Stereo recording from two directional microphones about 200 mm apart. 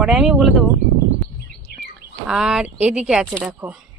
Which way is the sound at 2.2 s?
5° right (ahead or behind).